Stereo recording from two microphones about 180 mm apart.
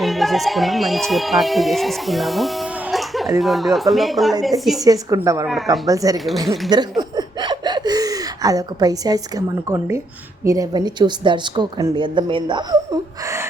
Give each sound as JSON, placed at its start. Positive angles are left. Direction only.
{"t": 0.0, "sound": "a woman's voice", "side_deg": 0}
{"t": 4.9, "sound": "a woman's voice", "side_deg": -20}
{"t": 6.2, "sound": "speech", "side_deg": 0}
{"t": 7.2, "sound": "gasp", "side_deg": -25}
{"t": 9.6, "sound": "a woman's voice", "side_deg": -15}